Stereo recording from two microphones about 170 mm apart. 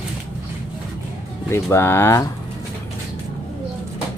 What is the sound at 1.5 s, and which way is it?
Speech, 15° left (ahead or behind).